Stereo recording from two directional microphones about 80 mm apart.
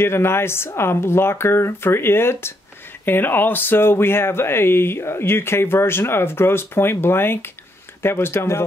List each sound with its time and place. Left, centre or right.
0.0 s speech: left